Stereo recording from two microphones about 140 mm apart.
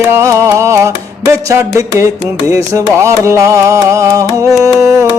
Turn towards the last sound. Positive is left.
turn(degrees=-20)  # may be behind; listen again after turning